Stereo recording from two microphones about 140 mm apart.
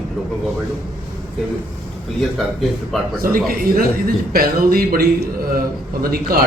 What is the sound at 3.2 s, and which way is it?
A man's voice, 90° right.